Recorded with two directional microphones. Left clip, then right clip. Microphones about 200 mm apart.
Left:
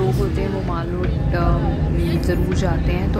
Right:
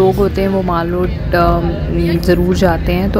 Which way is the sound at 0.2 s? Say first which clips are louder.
Right 9 dB; 40° right (ahead or behind).